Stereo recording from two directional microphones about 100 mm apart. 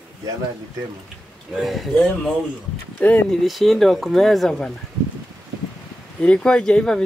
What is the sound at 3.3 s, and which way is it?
Speech, centre (ahead or behind).